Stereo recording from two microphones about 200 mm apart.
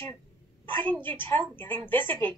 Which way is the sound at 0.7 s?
25° right (ahead or behind).